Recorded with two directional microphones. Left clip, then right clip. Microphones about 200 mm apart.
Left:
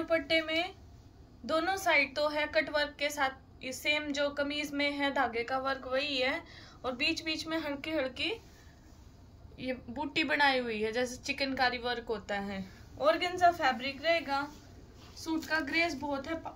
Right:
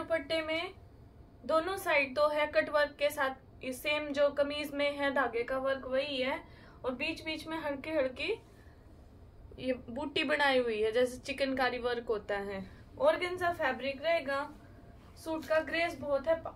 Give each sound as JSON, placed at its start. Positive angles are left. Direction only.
{"t": 0.1, "sound": "a woman's voice", "side_deg": -20}
{"t": 9.6, "sound": "a woman's voice", "side_deg": -30}